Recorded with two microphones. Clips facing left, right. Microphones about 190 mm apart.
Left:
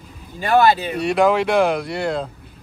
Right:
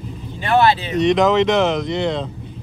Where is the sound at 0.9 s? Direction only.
10° left (ahead or behind).